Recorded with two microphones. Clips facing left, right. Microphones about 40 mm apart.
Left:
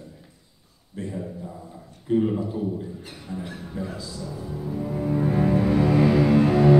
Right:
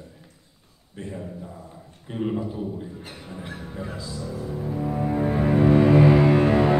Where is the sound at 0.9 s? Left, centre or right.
Centre.